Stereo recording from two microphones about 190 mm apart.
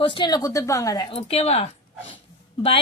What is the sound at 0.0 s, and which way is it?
Speech, 25° left (ahead or behind).